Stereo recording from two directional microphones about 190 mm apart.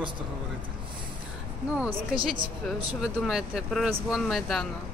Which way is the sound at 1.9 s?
25° right (ahead or behind).